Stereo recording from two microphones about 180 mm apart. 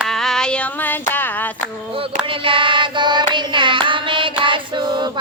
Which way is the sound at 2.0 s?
30° right (ahead or behind).